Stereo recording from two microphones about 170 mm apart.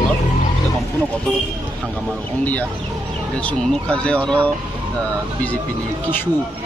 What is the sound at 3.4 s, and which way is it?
Speech, 5° left (ahead or behind).